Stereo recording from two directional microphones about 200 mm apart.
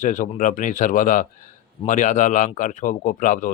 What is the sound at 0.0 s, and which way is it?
Speech, 40° left (ahead or behind).